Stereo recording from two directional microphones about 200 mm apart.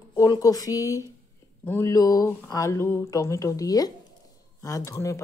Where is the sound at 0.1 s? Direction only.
15° left (ahead or behind).